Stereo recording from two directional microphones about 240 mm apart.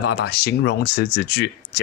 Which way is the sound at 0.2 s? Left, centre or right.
Left.